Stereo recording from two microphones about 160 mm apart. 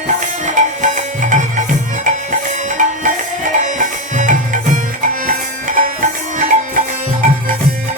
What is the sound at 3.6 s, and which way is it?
Music, 50° right (ahead or behind).